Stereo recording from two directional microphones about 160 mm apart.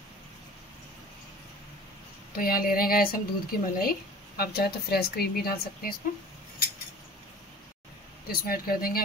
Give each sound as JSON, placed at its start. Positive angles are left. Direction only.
{"t": 2.3, "sound": "a woman's voice", "side_deg": 65}
{"t": 8.3, "sound": "a woman's voice", "side_deg": 65}